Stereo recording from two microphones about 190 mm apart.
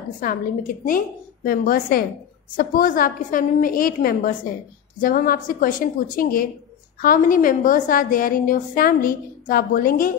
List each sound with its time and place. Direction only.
0.8 s a woman's voice: 50° left (ahead or behind)